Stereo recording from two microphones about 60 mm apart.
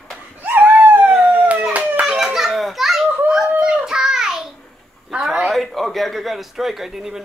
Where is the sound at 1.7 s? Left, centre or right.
Centre.